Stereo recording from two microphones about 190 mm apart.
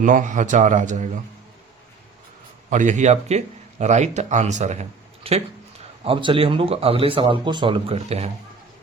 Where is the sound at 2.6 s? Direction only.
40° right (ahead or behind).